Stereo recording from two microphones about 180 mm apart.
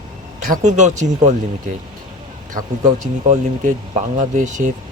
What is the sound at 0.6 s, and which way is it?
Speech, 40° right (ahead or behind).